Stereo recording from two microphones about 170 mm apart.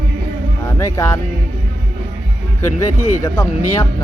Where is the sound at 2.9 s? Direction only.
50° left (ahead or behind).